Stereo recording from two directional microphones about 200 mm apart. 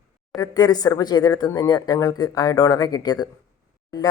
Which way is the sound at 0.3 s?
20° left (ahead or behind).